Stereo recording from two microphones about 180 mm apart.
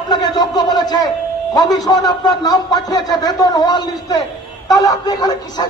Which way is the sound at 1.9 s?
20° left (ahead or behind).